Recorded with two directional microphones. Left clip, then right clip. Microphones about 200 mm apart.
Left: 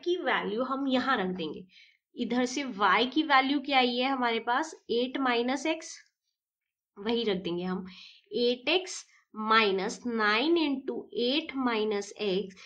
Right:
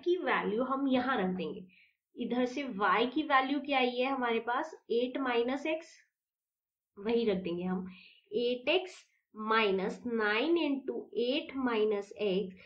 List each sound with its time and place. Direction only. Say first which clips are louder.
0.0 s a woman's voice: left 2 dB; 25° left (ahead or behind); by 5.9 s 40° left (ahead or behind)
7.0 s a woman's voice: left 1 dB; 45° left (ahead or behind)